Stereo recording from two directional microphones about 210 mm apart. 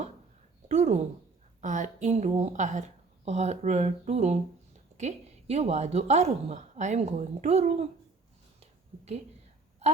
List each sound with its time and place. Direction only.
0.7 s a woman's voice: 30° right (ahead or behind)